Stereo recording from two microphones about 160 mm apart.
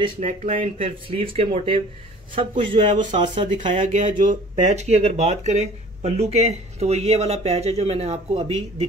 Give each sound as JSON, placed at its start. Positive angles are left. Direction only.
{"t": 0.2, "sound": "speech", "side_deg": -55}
{"t": 0.7, "sound": "speech", "side_deg": -35}
{"t": 3.4, "sound": "speech", "side_deg": -55}